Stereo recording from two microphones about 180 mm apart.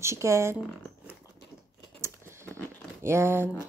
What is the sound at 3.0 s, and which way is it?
Speech, 15° right (ahead or behind).